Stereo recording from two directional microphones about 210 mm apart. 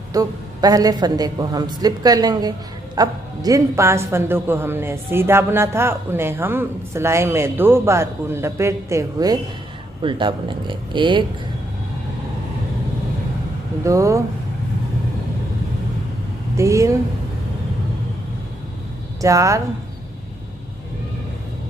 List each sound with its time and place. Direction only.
0.1 s a man's voice: 15° right (ahead or behind)
13.8 s a man's voice: 15° right (ahead or behind)
16.5 s a man's voice: 15° right (ahead or behind)
19.2 s a man's voice: 15° right (ahead or behind)